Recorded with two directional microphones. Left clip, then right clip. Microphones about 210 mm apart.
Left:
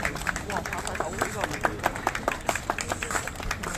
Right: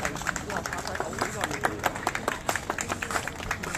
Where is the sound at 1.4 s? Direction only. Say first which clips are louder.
Left 1 dB; 30° left (ahead or behind).